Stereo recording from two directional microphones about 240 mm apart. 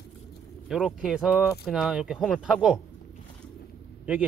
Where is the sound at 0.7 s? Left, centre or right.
Centre.